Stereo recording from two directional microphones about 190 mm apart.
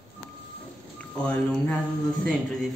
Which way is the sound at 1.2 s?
5° left (ahead or behind).